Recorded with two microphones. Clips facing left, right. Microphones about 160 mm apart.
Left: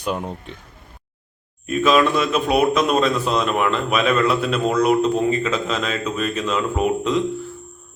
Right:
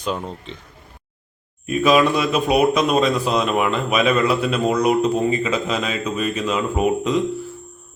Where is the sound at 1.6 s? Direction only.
10° right (ahead or behind).